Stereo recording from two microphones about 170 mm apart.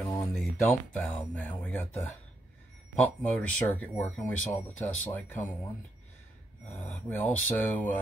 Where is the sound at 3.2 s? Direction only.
10° left (ahead or behind).